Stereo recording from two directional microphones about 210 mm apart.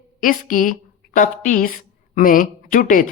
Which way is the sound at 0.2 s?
40° left (ahead or behind).